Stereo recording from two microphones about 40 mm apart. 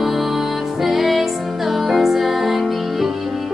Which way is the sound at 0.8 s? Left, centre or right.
Centre.